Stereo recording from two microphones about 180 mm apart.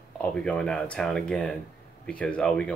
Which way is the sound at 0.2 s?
5° left (ahead or behind).